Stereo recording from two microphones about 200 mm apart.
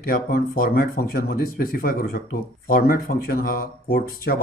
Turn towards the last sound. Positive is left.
turn(degrees=45)  # may be behind; listen again after turning